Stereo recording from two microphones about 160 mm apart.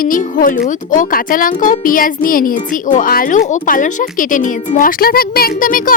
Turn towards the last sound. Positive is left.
turn(degrees=60)  # may be behind; listen again after turning